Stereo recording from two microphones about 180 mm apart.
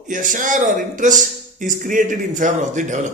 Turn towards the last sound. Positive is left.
turn(degrees=-40)  # may be behind; listen again after turning